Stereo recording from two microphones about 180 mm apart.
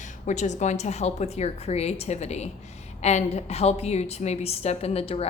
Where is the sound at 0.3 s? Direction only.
40° left (ahead or behind).